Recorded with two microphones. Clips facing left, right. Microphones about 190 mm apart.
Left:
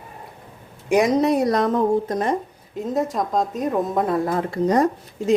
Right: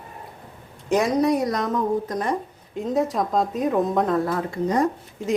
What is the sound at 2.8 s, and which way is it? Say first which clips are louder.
Speech: even; centre (ahead or behind).